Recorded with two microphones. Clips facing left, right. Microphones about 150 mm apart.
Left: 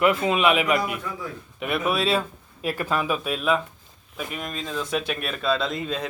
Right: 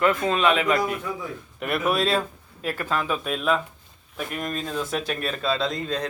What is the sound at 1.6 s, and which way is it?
Speech, centre (ahead or behind).